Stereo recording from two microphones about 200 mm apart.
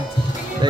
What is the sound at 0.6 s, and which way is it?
Music, 20° right (ahead or behind).